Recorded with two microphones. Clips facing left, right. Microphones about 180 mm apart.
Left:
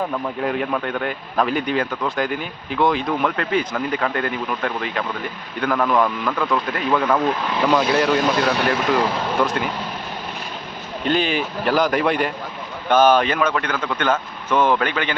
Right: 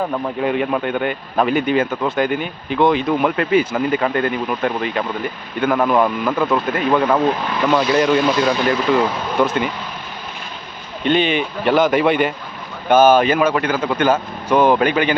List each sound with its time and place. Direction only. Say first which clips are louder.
0.4 s speech: right 4 dB; 5° right (ahead or behind)
7.6 s speech: right 2 dB; 10° left (ahead or behind)
11.0 s speech: right 4 dB; centre (ahead or behind)